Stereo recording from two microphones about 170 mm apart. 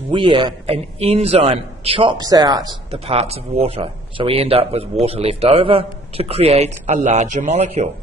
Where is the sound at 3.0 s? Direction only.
35° right (ahead or behind).